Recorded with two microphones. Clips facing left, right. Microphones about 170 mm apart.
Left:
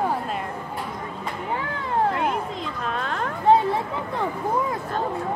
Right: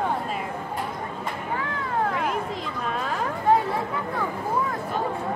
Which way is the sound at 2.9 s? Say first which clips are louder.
Even; 5° right (ahead or behind).